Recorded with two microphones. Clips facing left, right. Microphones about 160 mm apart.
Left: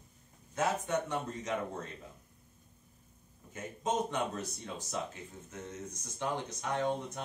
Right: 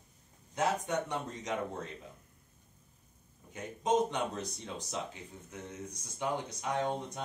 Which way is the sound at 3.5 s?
15° right (ahead or behind).